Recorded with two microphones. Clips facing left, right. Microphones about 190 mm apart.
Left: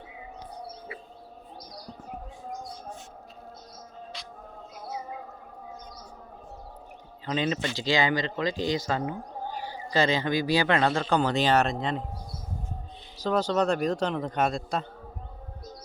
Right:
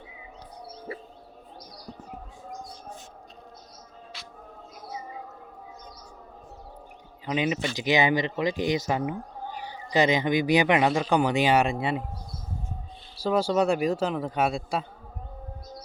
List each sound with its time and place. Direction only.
0.9 s bird: 40° right (ahead or behind)
7.3 s a man's voice: 10° right (ahead or behind)
13.1 s speech: 10° right (ahead or behind)